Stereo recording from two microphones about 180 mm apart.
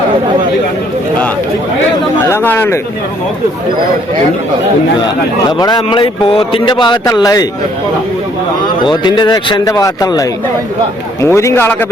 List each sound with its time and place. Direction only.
2.2 s a man's voice: 10° left (ahead or behind)
5.5 s speech: 20° left (ahead or behind)
8.6 s a man's voice: 25° left (ahead or behind)